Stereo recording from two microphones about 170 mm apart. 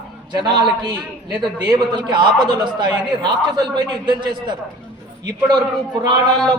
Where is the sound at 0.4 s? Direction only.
25° right (ahead or behind).